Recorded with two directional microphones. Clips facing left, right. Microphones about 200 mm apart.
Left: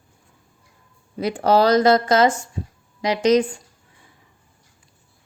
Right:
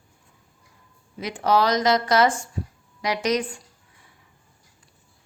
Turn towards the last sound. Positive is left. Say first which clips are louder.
# left 7 dB
turn(degrees=20)  # may be behind; listen again after turning